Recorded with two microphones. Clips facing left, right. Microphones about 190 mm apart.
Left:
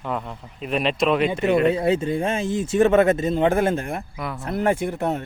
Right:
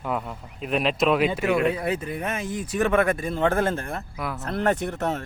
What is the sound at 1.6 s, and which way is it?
Speech, 25° left (ahead or behind).